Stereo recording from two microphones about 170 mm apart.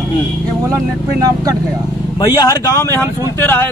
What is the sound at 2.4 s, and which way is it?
Speech, 20° left (ahead or behind).